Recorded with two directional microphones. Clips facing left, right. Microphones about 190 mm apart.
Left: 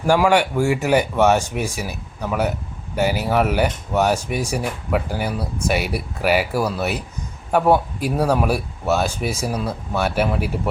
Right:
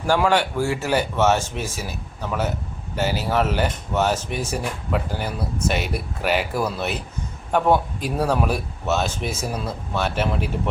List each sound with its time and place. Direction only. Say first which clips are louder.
0.1 s speech: left 3 dB; 10° left (ahead or behind)